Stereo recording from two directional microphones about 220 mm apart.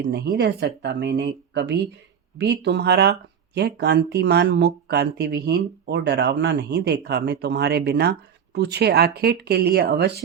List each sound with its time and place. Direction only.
0.0 s speech: 50° right (ahead or behind)